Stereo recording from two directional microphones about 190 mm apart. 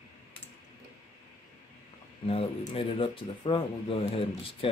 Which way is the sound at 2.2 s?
30° left (ahead or behind).